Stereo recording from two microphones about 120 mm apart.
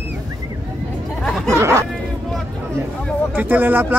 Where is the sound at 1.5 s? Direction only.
25° right (ahead or behind).